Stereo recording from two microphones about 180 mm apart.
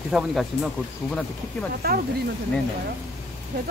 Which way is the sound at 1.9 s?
55° right (ahead or behind).